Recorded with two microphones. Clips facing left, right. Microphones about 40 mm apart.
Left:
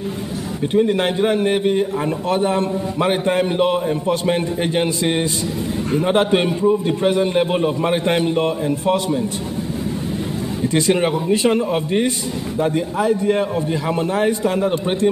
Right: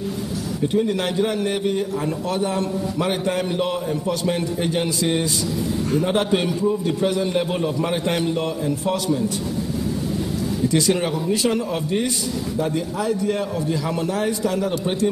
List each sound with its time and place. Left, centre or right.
0.7 s a man's voice: left
10.7 s a man's voice: left